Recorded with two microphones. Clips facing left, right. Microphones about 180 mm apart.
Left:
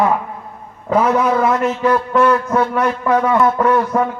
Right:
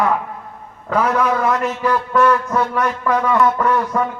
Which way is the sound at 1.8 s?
30° left (ahead or behind).